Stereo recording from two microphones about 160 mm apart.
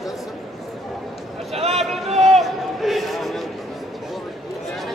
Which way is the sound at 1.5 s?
40° right (ahead or behind).